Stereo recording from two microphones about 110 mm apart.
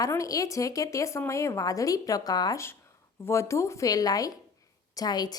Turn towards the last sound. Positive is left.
turn(degrees=40)  # may be behind; listen again after turning